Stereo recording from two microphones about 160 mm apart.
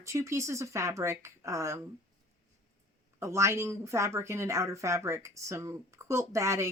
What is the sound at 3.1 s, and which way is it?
Speech, 15° right (ahead or behind).